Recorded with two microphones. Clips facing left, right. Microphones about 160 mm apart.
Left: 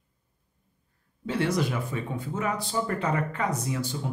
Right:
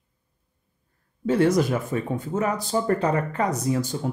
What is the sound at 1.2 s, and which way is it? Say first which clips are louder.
Speech: right 7 dB; 45° right (ahead or behind).